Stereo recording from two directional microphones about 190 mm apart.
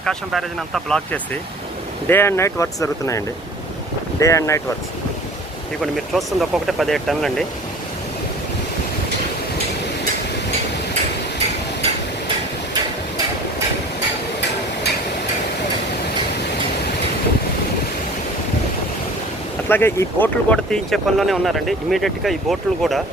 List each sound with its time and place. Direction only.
0.0 s speech: centre (ahead or behind)
5.8 s speech: centre (ahead or behind)
19.6 s speech: 10° left (ahead or behind)